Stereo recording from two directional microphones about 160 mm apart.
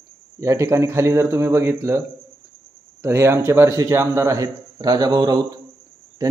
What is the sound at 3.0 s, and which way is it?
Speech, 15° right (ahead or behind).